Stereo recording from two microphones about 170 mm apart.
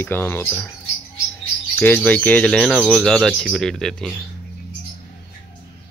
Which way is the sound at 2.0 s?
10° left (ahead or behind).